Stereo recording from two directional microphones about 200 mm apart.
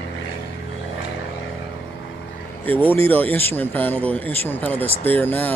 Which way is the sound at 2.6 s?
10° left (ahead or behind).